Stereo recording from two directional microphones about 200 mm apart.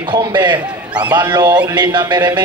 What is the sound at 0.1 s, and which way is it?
A man's voice, 20° right (ahead or behind).